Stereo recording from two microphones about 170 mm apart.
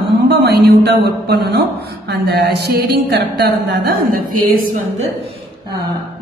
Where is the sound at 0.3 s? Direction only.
70° right (ahead or behind).